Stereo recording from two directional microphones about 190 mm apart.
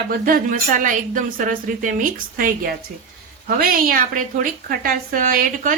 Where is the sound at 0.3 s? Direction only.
45° right (ahead or behind).